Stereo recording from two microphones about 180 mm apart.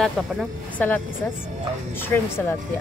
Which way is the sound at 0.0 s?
5° left (ahead or behind).